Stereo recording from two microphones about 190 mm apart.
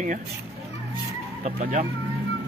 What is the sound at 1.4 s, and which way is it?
Speech, 40° right (ahead or behind).